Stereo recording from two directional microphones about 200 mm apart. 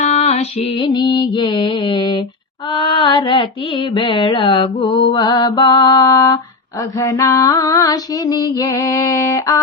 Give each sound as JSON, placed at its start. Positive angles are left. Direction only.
{"t": 0.0, "sound": "mantra", "side_deg": 35}
{"t": 2.6, "sound": "carnatic music", "side_deg": 25}
{"t": 5.0, "sound": "mantra", "side_deg": 20}